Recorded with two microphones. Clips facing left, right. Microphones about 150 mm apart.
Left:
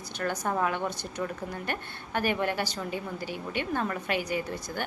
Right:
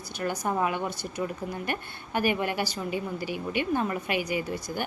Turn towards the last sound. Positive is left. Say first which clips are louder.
# right 2 dB
turn(degrees=-10)  # may be behind; listen again after turning